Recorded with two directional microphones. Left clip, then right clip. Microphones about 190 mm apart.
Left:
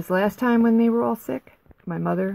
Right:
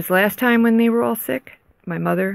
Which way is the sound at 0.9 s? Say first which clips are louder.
Right 4 dB; 20° right (ahead or behind).